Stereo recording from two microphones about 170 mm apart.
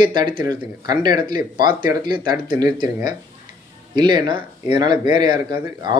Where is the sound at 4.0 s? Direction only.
25° right (ahead or behind).